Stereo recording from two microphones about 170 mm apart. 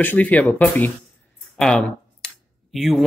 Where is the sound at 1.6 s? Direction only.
5° left (ahead or behind).